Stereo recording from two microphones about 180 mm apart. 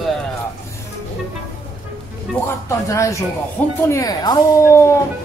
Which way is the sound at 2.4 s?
15° left (ahead or behind).